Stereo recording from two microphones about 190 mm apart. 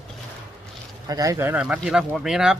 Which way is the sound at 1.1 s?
20° right (ahead or behind).